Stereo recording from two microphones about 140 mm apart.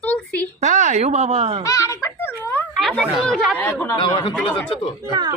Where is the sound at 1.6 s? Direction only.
25° left (ahead or behind).